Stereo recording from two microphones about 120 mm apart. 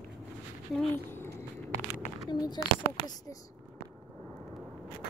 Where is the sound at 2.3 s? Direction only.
40° left (ahead or behind).